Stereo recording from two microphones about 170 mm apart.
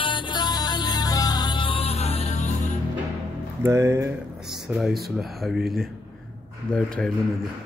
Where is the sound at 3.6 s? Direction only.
15° right (ahead or behind).